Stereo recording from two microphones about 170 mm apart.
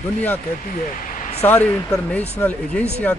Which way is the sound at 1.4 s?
10° left (ahead or behind).